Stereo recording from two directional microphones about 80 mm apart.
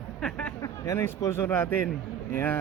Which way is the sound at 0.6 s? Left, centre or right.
Left.